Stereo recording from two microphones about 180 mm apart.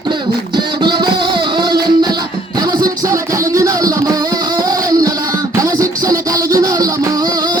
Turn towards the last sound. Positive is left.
turn(degrees=-20)  # may be behind; listen again after turning